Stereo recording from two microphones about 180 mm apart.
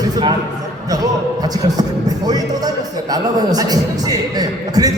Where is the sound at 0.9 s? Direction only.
20° right (ahead or behind).